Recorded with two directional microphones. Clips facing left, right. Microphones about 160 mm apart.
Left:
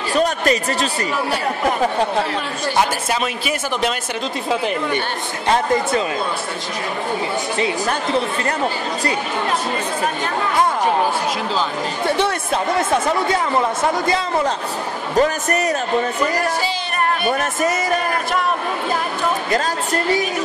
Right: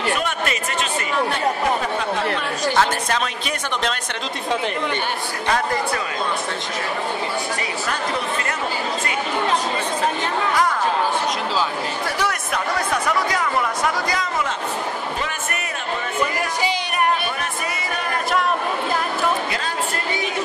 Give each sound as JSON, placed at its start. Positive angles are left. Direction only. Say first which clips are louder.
{"t": 0.1, "sound": "chatter", "louder": "left 6 dB", "side_deg": 35}
{"t": 2.7, "sound": "speech", "louder": "left 2 dB", "side_deg": 10}
{"t": 5.5, "sound": "speech", "louder": "left 5 dB", "side_deg": 25}
{"t": 12.1, "sound": "speech", "louder": "left 8 dB", "side_deg": 25}
{"t": 17.3, "sound": "a woman's voice", "louder": "left 8 dB", "side_deg": 45}
{"t": 19.5, "sound": "a woman's voice", "louder": "left 6 dB", "side_deg": 40}